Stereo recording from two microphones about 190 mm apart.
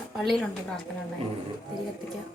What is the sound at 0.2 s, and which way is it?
Speech, centre (ahead or behind).